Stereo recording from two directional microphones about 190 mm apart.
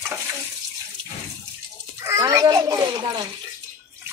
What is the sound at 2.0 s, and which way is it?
Children playing, 15° right (ahead or behind).